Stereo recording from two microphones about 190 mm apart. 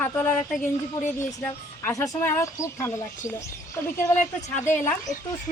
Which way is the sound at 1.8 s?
15° left (ahead or behind).